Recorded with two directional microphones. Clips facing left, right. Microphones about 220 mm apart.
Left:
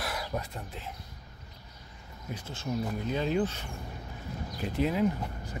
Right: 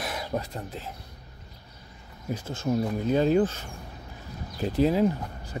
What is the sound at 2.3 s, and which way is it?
Speech, 45° right (ahead or behind).